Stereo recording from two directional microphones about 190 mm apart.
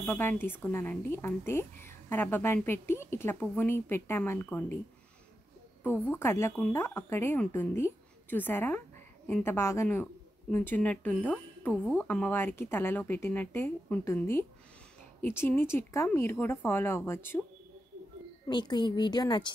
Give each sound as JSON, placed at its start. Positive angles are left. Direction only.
{"t": 0.0, "sound": "speech", "side_deg": 10}
{"t": 5.9, "sound": "speech", "side_deg": 10}
{"t": 18.5, "sound": "a woman's voice", "side_deg": 25}